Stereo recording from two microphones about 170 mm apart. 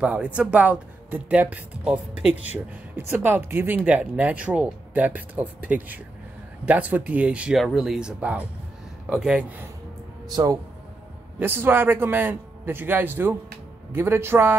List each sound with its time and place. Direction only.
0.0 s speech: 5° right (ahead or behind)
10.2 s speech: 20° right (ahead or behind)